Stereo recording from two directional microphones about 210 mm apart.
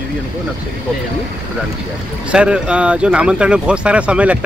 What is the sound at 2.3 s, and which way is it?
Speech, 5° right (ahead or behind).